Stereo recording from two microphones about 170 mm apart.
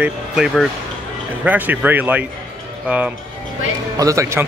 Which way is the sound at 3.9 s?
20° right (ahead or behind).